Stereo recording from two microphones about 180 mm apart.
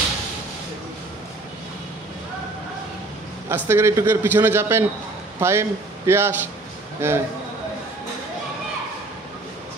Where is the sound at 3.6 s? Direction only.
15° right (ahead or behind).